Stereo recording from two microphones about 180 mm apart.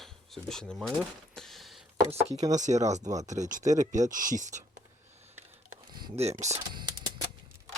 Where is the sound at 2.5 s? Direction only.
40° right (ahead or behind).